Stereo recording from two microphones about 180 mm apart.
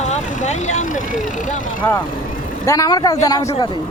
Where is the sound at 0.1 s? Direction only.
40° left (ahead or behind).